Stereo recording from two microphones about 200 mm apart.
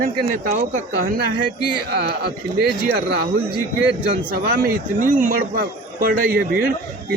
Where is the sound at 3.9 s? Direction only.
50° right (ahead or behind).